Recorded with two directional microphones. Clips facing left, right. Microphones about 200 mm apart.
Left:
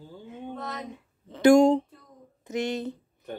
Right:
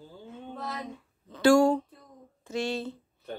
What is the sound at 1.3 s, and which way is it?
Speech, 20° left (ahead or behind).